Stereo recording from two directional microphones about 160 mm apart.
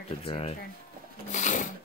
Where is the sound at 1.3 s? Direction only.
50° left (ahead or behind).